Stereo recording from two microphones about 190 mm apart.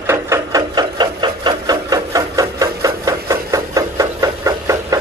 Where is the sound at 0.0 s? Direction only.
15° right (ahead or behind).